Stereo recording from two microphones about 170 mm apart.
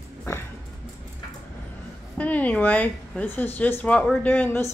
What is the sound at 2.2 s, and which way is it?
Speech, 10° left (ahead or behind).